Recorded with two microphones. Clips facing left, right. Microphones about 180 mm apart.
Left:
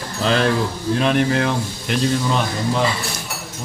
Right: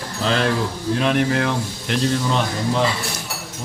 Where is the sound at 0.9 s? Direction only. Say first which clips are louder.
Left 1 dB; 35° left (ahead or behind).